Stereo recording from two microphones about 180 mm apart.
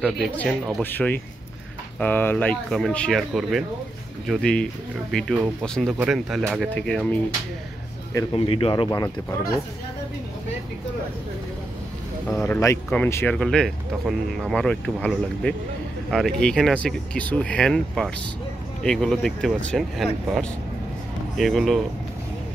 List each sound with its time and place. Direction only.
0.0 s speech: 5° left (ahead or behind)
8.1 s speech: 20° left (ahead or behind)
8.5 s speech: 30° left (ahead or behind)
12.3 s speech: 10° left (ahead or behind)
21.4 s speech: centre (ahead or behind)